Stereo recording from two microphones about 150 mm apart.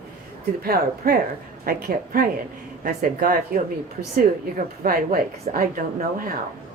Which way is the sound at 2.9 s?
65° right (ahead or behind).